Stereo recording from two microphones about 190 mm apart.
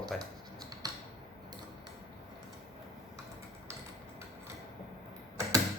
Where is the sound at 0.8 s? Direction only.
20° right (ahead or behind).